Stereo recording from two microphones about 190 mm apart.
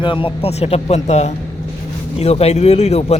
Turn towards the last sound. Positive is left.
turn(degrees=35)  # may be behind; listen again after turning